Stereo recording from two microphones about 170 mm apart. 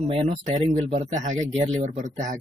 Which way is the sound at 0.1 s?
40° right (ahead or behind).